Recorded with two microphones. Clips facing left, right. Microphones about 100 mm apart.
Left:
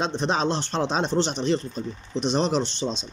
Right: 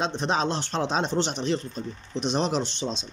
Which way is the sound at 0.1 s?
5° right (ahead or behind).